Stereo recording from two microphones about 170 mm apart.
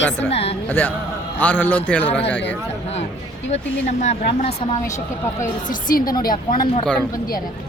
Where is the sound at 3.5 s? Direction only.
40° left (ahead or behind).